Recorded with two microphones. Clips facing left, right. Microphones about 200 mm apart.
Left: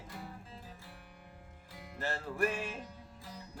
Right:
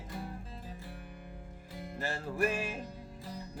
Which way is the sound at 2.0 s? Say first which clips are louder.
Right 1 dB; 10° right (ahead or behind).